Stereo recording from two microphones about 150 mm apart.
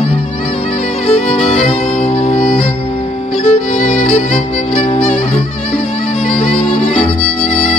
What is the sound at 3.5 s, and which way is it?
Violin, 50° left (ahead or behind).